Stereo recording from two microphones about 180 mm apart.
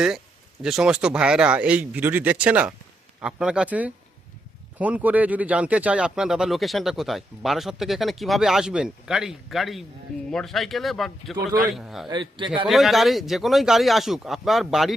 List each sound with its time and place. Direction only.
0.6 s speech: 5° right (ahead or behind)
11.3 s a man's voice: 20° right (ahead or behind)
11.7 s speech: centre (ahead or behind)
12.0 s a man's voice: 25° right (ahead or behind)
12.6 s speech: centre (ahead or behind)